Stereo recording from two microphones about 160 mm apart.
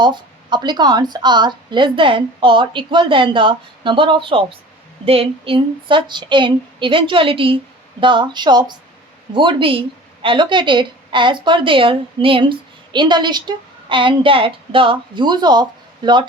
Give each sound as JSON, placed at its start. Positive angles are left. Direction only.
{"t": 0.0, "sound": "a woman's voice", "side_deg": -30}